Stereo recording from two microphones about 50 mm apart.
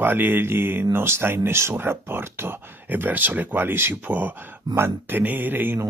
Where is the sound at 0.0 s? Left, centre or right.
Right.